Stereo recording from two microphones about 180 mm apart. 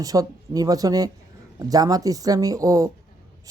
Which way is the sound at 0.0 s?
20° right (ahead or behind).